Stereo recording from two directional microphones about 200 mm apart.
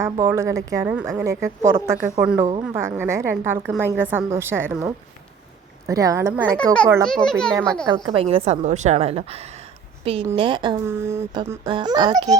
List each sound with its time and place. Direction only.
0.0 s a woman's voice: 15° right (ahead or behind)
7.0 s a child's voice: 5° left (ahead or behind)
7.9 s a woman's voice: 20° right (ahead or behind)
10.8 s a woman's voice: 15° right (ahead or behind)